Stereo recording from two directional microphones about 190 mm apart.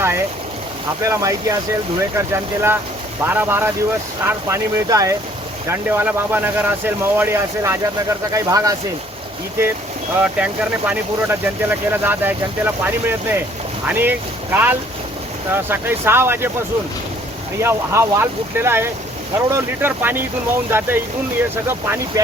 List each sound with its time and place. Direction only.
0.0 s speech: 15° right (ahead or behind)
10.3 s speech: 5° right (ahead or behind)
17.6 s speech: 15° right (ahead or behind)